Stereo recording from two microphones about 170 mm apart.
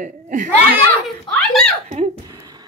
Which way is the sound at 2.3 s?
20° right (ahead or behind).